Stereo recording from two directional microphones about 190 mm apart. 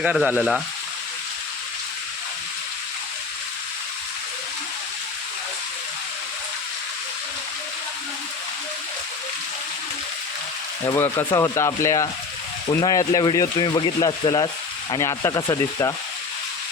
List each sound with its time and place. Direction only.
0.0 s frying: 5° right (ahead or behind)
10.8 s speech: 15° left (ahead or behind)